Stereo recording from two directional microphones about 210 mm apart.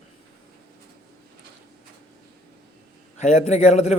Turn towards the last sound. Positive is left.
turn(degrees=30)  # may be behind; listen again after turning